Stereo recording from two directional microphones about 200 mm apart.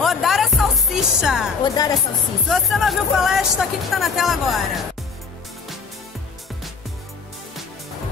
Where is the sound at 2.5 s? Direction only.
Centre (ahead or behind).